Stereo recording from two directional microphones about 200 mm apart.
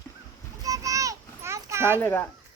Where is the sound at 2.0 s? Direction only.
10° left (ahead or behind).